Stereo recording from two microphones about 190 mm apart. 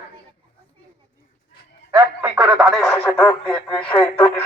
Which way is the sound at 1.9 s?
10° right (ahead or behind).